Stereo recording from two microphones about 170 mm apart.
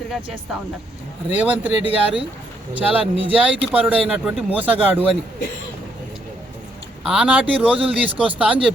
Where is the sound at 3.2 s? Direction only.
10° right (ahead or behind).